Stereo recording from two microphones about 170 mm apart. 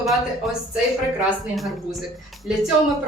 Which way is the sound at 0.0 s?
Centre (ahead or behind).